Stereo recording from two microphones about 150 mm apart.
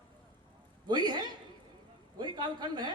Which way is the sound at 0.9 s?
30° right (ahead or behind).